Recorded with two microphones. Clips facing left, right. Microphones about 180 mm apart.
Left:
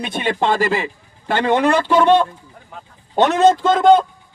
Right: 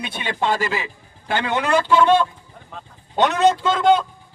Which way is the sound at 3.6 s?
50° left (ahead or behind).